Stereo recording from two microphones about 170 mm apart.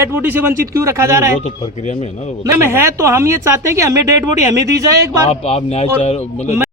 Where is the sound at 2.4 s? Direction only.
15° right (ahead or behind).